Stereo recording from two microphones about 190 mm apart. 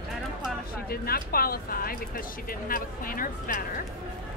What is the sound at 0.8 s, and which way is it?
Speech, 50° left (ahead or behind).